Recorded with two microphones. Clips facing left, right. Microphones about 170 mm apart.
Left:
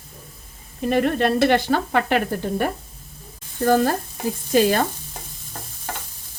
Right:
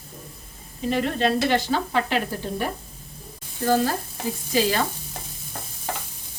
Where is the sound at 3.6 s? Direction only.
50° left (ahead or behind).